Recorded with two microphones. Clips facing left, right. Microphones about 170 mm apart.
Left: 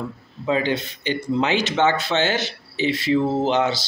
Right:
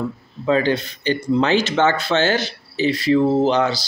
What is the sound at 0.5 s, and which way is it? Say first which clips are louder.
Speech: right 4 dB; 20° left (ahead or behind).